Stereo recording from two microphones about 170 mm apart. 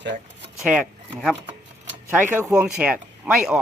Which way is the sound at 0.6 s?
5° right (ahead or behind).